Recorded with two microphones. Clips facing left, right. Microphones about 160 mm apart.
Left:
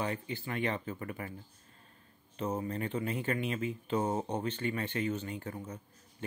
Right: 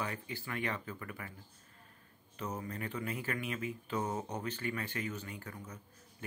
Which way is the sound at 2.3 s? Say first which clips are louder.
Left 6 dB; 25° left (ahead or behind).